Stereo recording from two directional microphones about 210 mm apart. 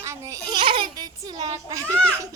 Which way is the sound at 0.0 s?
15° right (ahead or behind).